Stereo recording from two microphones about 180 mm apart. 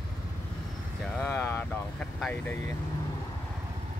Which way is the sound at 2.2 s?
5° left (ahead or behind).